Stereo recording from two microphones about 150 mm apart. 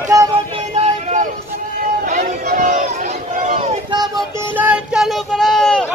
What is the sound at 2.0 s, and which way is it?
Music, 60° right (ahead or behind).